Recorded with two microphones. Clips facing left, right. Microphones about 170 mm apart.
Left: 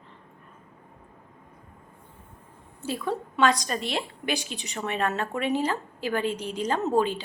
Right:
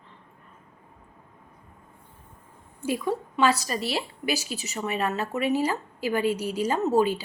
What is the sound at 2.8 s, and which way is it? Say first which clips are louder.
A woman's voice: right 3 dB; 10° right (ahead or behind).